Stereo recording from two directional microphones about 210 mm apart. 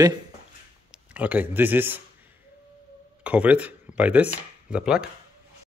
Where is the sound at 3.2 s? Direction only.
5° right (ahead or behind).